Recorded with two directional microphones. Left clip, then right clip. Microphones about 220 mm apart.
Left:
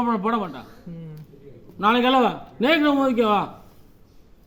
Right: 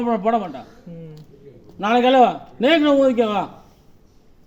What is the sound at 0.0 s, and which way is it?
Speech, 15° left (ahead or behind).